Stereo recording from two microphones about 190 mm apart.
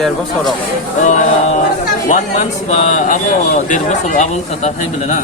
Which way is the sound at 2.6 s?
35° left (ahead or behind).